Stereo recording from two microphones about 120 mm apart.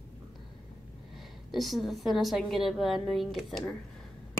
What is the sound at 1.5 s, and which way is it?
A woman's voice, centre (ahead or behind).